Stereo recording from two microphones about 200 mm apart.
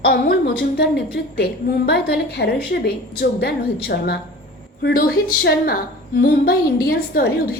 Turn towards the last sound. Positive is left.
turn(degrees=50)  # may be behind; listen again after turning